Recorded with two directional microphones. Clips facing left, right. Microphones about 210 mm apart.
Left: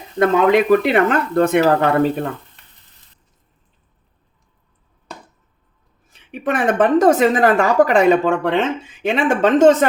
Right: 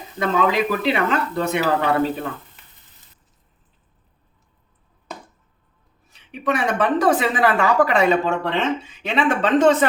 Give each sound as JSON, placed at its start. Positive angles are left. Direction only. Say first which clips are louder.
{"t": 0.2, "sound": "speech", "louder": "left 6 dB", "side_deg": 55}
{"t": 6.1, "sound": "speech", "louder": "left 2 dB", "side_deg": 50}